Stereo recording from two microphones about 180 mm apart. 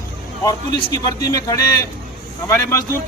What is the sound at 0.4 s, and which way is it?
A man's voice, 20° left (ahead or behind).